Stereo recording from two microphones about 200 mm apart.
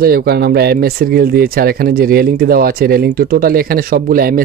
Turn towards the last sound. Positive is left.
turn(degrees=-45)  # may be behind; listen again after turning